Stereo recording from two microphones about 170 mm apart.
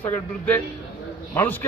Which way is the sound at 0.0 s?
10° left (ahead or behind).